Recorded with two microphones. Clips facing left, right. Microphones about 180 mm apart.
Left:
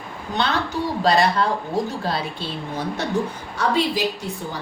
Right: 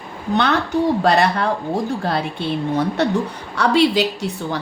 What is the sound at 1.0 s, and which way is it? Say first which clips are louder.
A woman's voice: right 2 dB; 60° right (ahead or behind).